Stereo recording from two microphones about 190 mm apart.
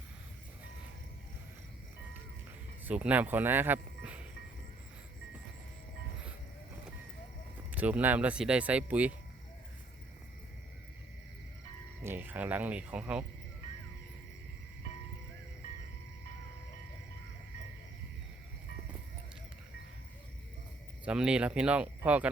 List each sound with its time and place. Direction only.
2.8 s speech: 5° right (ahead or behind)
7.7 s speech: 10° right (ahead or behind)
12.0 s speech: 10° right (ahead or behind)
21.0 s speech: 5° right (ahead or behind)